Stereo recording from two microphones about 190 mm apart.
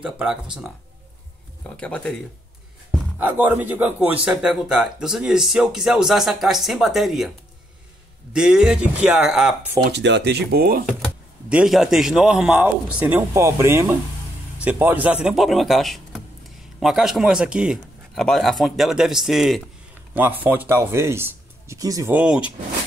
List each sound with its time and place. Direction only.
0.0 s speech: 5° right (ahead or behind)
1.8 s speech: 5° left (ahead or behind)
3.2 s speech: 10° right (ahead or behind)
8.3 s speech: 5° right (ahead or behind)
9.9 s speech: 65° right (ahead or behind)
11.4 s speech: 5° right (ahead or behind)